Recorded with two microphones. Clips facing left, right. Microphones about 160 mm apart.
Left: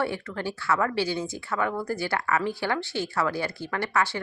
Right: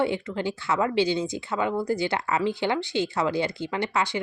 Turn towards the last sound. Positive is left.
turn(degrees=-15)  # may be behind; listen again after turning